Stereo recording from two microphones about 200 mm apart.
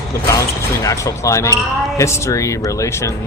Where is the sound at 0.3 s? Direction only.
15° left (ahead or behind).